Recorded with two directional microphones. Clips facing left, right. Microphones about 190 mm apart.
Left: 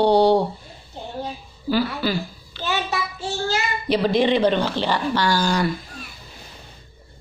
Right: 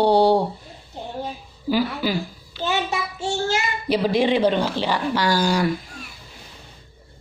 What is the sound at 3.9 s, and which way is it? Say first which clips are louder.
Speech: left 1 dB; 10° right (ahead or behind).